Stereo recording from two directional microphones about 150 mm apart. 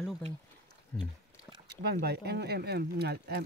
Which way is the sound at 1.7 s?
90° right.